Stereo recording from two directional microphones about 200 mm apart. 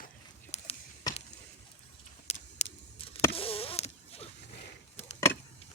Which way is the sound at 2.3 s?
30° left (ahead or behind).